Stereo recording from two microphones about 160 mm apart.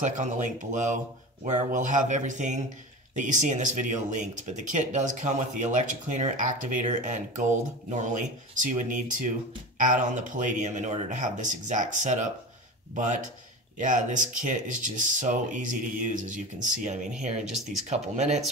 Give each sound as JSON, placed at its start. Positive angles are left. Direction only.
{"t": 0.0, "sound": "speech", "side_deg": -50}